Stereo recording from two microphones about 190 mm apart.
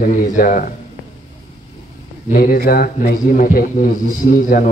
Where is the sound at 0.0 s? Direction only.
45° left (ahead or behind).